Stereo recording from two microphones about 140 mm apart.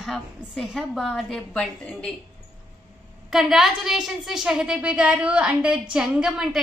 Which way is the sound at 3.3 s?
Centre (ahead or behind).